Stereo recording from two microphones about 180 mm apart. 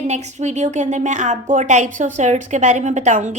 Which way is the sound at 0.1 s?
40° right (ahead or behind).